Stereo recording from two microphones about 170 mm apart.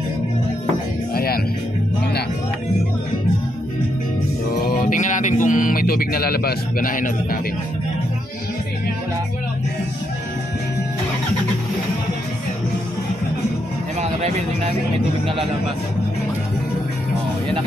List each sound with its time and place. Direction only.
1.1 s music: 60° left (ahead or behind)
4.6 s music: 60° left (ahead or behind)